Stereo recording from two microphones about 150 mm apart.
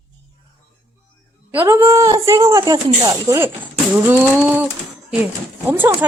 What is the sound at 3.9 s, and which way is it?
Pigeon, 15° right (ahead or behind).